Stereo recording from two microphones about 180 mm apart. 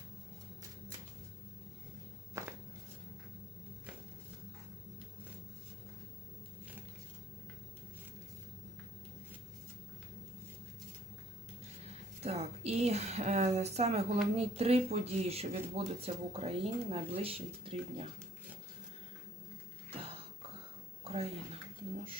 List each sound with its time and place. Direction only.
2.4 s walk: 15° right (ahead or behind)
12.2 s speech: 35° right (ahead or behind)
21.0 s a sound: 35° right (ahead or behind)